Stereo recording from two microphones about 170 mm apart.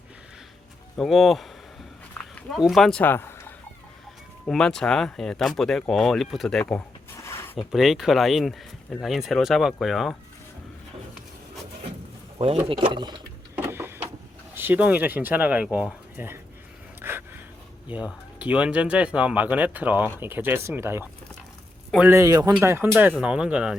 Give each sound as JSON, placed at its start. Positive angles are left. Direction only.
{"t": 0.9, "sound": "speech", "side_deg": 0}
{"t": 2.1, "sound": "a sound", "side_deg": 10}
{"t": 2.6, "sound": "speech", "side_deg": 0}
{"t": 4.4, "sound": "speech", "side_deg": 5}
{"t": 7.3, "sound": "a sound", "side_deg": 15}
{"t": 7.7, "sound": "speech", "side_deg": 0}
{"t": 12.4, "sound": "speech", "side_deg": -35}
{"t": 13.6, "sound": "a sound", "side_deg": -15}
{"t": 14.5, "sound": "speech", "side_deg": -10}
{"t": 17.0, "sound": "gasp", "side_deg": -10}
{"t": 17.9, "sound": "speech", "side_deg": -10}